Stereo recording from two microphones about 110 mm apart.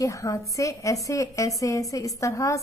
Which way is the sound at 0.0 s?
30° left (ahead or behind).